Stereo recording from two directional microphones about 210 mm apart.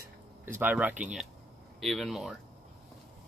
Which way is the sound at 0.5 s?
10° right (ahead or behind).